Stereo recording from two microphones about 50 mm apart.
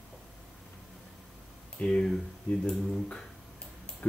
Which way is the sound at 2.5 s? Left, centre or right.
Left.